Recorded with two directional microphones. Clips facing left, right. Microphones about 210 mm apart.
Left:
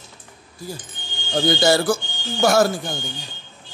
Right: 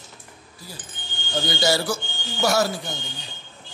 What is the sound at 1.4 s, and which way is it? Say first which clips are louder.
Speech: left 6 dB; 55° left (ahead or behind).